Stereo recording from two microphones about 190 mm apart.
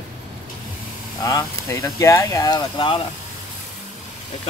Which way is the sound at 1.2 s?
15° left (ahead or behind).